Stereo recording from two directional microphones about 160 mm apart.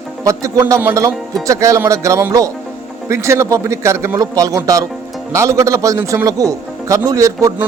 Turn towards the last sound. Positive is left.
turn(degrees=-20)  # may be behind; listen again after turning